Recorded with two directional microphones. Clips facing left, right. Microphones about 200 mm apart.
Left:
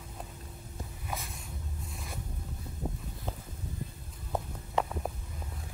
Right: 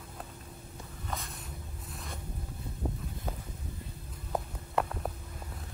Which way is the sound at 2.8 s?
5° left (ahead or behind).